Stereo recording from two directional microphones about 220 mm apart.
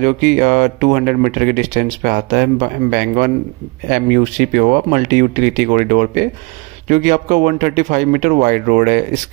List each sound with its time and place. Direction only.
0.0 s speech: 35° right (ahead or behind)